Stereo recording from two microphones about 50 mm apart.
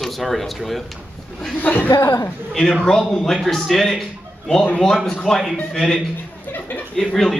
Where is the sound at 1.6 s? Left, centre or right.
Left.